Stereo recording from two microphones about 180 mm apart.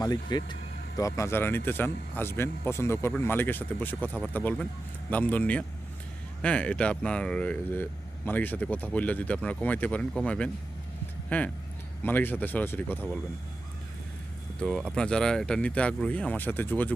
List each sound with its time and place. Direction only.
0.0 s speech: 25° left (ahead or behind)
14.6 s speech: 5° left (ahead or behind)